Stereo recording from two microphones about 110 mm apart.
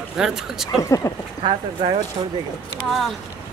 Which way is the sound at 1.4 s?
55° right (ahead or behind).